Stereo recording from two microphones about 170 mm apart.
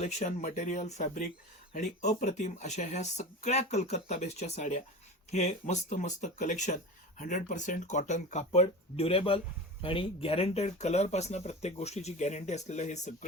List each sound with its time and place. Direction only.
0.0 s speech: 40° left (ahead or behind)